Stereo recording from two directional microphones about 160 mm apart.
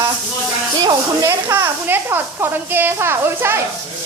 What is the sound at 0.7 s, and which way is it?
Speech, 25° right (ahead or behind).